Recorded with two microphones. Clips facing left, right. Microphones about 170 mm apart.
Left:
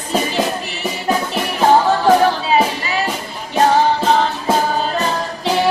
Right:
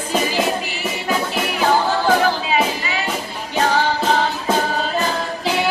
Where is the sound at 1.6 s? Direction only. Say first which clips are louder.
Left 5 dB; 30° left (ahead or behind).